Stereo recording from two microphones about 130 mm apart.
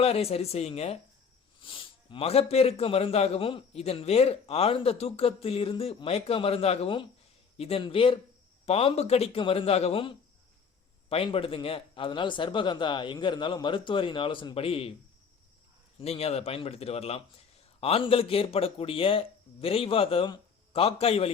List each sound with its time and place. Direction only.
0.0 s a man's voice: 50° left (ahead or behind)
1.6 s a man's voice: 40° left (ahead or behind)
16.0 s a man's voice: 50° left (ahead or behind)